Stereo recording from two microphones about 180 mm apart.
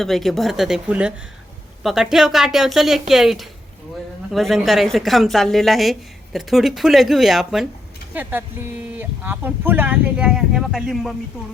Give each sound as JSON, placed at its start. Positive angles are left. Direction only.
{"t": 0.0, "sound": "a woman's voice", "side_deg": 0}